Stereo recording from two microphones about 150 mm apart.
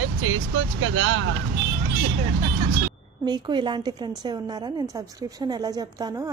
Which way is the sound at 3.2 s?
30° right (ahead or behind).